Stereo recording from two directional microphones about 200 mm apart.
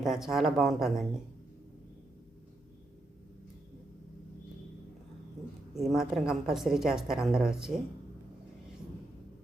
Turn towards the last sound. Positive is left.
turn(degrees=-5)  # may be behind; listen again after turning